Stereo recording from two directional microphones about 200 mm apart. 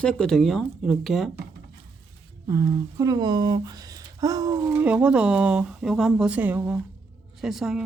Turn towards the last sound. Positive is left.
turn(degrees=0)  # may be behind; listen again after turning